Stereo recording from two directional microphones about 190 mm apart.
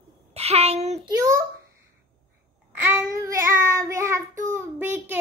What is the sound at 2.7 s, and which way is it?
Child singing, 15° right (ahead or behind).